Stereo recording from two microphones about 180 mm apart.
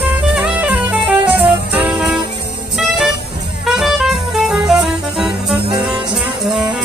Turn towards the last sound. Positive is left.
turn(degrees=-5)  # may be behind; listen again after turning